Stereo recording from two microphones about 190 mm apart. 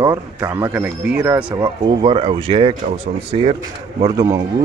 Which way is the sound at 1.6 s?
30° right (ahead or behind).